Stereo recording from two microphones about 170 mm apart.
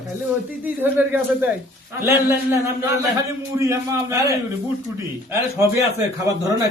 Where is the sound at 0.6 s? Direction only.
10° right (ahead or behind).